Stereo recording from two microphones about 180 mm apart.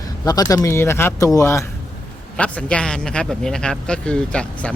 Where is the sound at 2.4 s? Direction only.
5° left (ahead or behind).